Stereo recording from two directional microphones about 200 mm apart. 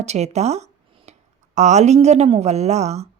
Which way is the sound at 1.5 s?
35° right (ahead or behind).